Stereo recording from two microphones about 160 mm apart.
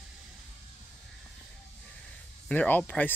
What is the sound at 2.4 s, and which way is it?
Speech, 10° left (ahead or behind).